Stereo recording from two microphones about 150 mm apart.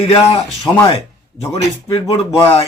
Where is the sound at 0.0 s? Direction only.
45° left (ahead or behind).